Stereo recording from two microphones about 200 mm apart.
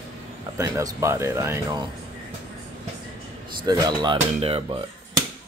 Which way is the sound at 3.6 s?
20° right (ahead or behind).